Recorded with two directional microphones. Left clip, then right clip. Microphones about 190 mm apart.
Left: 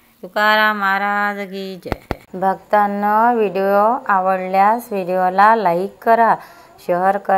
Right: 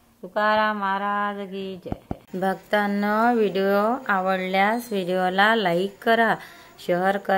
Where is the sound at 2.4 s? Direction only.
20° right (ahead or behind).